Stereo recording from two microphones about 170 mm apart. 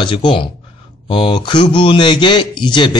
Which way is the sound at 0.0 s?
30° left (ahead or behind).